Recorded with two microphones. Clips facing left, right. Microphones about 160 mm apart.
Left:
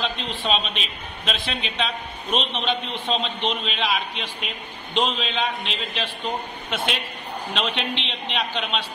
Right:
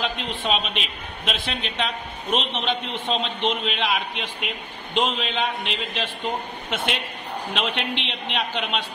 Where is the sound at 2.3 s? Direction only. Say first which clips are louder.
Even; 15° right (ahead or behind).